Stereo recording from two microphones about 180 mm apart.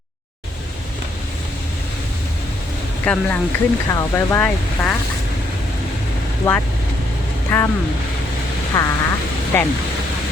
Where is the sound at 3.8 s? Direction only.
15° left (ahead or behind).